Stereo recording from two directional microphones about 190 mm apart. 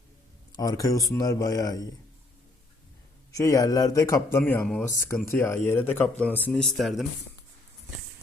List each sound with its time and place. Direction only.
0.5 s speech: 20° left (ahead or behind)
3.3 s speech: 15° left (ahead or behind); by 7.0 s centre (ahead or behind)